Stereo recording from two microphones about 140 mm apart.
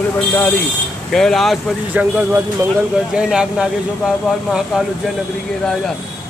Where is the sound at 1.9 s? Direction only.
10° right (ahead or behind).